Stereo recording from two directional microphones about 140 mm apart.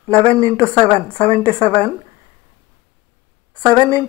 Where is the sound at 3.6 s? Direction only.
25° right (ahead or behind).